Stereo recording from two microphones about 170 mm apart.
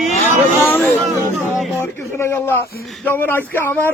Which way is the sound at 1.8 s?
15° left (ahead or behind).